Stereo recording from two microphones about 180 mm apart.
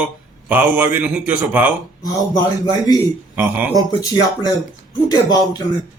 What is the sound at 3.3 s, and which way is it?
Speech, 10° right (ahead or behind).